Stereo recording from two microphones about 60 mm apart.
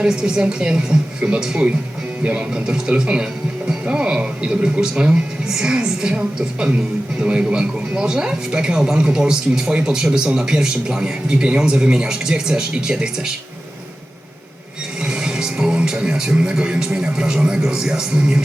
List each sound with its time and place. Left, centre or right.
0.0 s speech: centre
15.0 s speech: centre